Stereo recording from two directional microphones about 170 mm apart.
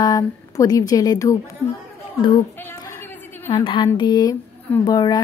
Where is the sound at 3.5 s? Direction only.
25° left (ahead or behind).